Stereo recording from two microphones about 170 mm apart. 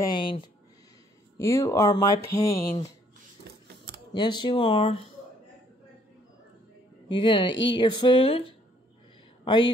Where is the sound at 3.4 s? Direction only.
70° right (ahead or behind).